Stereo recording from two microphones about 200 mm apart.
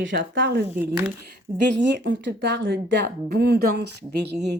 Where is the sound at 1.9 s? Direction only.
60° right (ahead or behind).